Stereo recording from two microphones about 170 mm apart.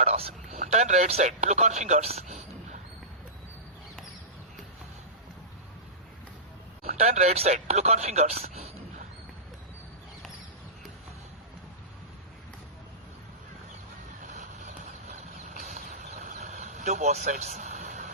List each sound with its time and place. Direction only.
0.0 s speech: 35° right (ahead or behind)
6.8 s speech: 40° right (ahead or behind)
14.3 s vehicle: 45° right (ahead or behind)